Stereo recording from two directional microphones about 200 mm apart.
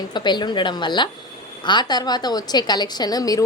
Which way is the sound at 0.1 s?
20° left (ahead or behind).